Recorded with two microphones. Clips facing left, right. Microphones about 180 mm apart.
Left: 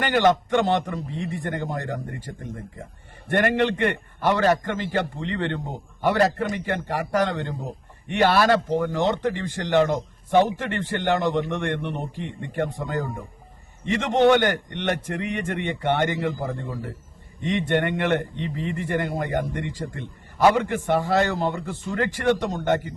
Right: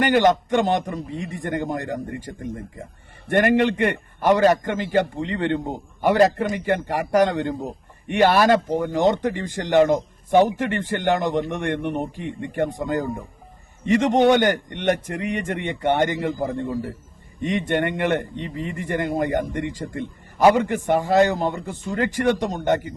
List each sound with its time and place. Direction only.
0.0 s speech: 15° right (ahead or behind)
17.4 s speech: 15° right (ahead or behind)